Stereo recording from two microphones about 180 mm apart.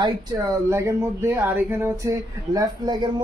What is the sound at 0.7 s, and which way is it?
Speech, 15° right (ahead or behind).